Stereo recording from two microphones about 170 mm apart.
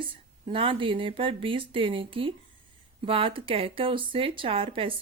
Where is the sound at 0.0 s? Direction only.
30° right (ahead or behind).